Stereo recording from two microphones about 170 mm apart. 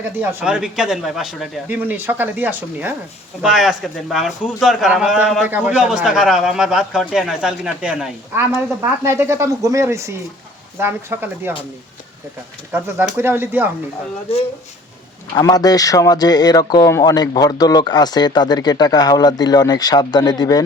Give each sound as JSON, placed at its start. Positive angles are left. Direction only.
{"t": 0.2, "sound": "speech", "side_deg": -15}
{"t": 0.4, "sound": "a man's voice", "side_deg": -5}
{"t": 8.4, "sound": "speech", "side_deg": -15}
{"t": 12.7, "sound": "speech", "side_deg": -10}
{"t": 15.4, "sound": "speech", "side_deg": 25}